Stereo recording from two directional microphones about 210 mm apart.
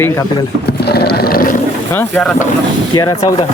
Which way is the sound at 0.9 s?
50° left (ahead or behind).